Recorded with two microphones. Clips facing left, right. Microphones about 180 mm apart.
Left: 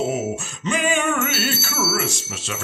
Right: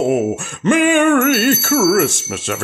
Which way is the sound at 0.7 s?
60° right (ahead or behind).